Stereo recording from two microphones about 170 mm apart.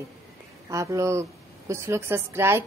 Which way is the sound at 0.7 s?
20° right (ahead or behind).